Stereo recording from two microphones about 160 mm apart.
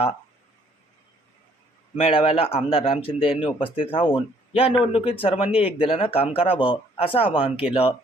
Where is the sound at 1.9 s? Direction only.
35° left (ahead or behind).